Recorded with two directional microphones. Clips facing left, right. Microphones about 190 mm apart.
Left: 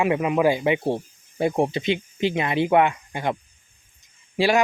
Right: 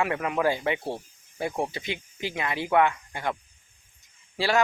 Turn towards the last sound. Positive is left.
turn(degrees=15)  # may be behind; listen again after turning